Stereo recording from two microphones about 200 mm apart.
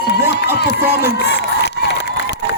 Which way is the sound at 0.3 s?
55° left (ahead or behind).